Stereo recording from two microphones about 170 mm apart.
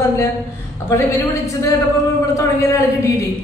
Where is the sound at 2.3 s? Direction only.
20° left (ahead or behind).